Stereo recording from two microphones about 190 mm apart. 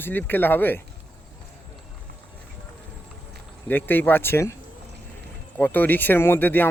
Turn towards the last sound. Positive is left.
turn(degrees=10)  # may be behind; listen again after turning